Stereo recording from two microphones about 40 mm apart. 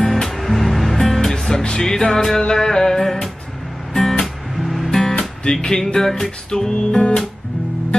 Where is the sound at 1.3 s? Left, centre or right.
Centre.